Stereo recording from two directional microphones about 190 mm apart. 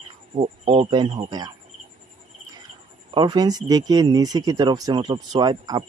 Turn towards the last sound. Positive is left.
turn(degrees=-20)  # may be behind; listen again after turning